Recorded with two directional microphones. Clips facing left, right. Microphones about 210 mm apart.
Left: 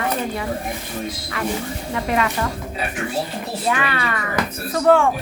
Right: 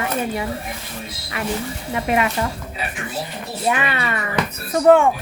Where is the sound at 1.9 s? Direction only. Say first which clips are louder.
Right 1 dB; 20° right (ahead or behind).